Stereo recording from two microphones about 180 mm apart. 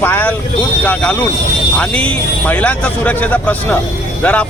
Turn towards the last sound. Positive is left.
turn(degrees=5)  # may be behind; listen again after turning